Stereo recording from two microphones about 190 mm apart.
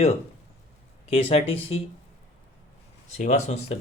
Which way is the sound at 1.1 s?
30° left (ahead or behind).